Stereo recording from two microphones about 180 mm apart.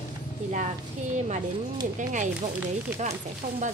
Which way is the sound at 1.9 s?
45° right (ahead or behind).